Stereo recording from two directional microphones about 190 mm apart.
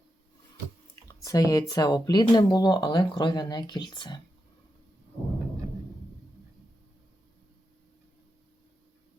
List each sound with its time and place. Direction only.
1.2 s speech: 20° left (ahead or behind)